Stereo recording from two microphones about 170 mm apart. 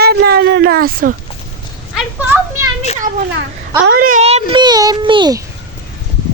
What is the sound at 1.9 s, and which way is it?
Speech, 10° right (ahead or behind).